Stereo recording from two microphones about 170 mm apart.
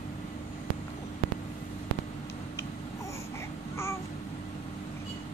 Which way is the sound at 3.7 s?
15° left (ahead or behind).